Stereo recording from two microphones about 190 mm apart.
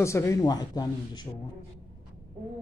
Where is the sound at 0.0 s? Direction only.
15° left (ahead or behind).